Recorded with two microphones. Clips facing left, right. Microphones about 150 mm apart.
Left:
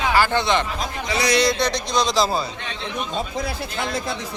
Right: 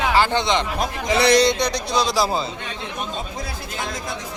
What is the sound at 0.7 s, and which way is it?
Speech, 60° right (ahead or behind).